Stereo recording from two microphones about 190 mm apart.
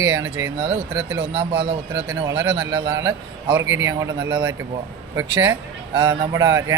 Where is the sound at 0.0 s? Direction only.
15° right (ahead or behind).